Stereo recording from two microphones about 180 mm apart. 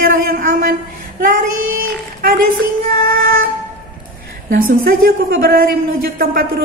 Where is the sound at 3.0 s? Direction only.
50° right (ahead or behind).